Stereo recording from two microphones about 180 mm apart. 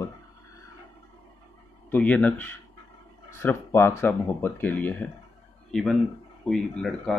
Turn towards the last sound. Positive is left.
turn(degrees=5)  # may be behind; listen again after turning